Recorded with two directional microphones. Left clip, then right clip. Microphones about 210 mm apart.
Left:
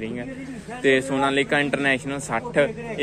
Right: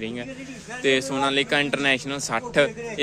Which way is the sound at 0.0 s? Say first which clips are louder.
Left 1 dB; 25° right (ahead or behind).